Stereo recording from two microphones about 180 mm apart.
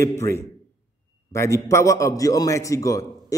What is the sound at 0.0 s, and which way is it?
A man's voice, 15° left (ahead or behind).